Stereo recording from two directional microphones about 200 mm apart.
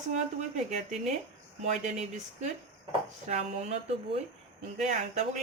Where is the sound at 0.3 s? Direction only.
35° right (ahead or behind).